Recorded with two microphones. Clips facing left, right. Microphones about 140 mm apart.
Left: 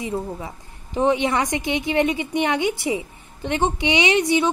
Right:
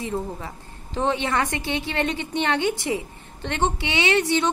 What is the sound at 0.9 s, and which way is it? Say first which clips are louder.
A woman's voice: left 4 dB; 15° left (ahead or behind).